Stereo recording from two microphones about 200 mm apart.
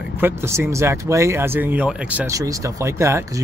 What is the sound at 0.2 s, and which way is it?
Speech, 15° right (ahead or behind).